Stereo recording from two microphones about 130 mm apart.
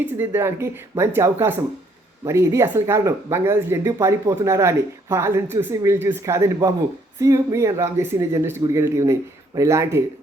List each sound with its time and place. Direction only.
0.0 s speech: 20° right (ahead or behind)